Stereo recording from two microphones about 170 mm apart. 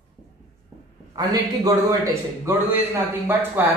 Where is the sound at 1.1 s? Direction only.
20° right (ahead or behind).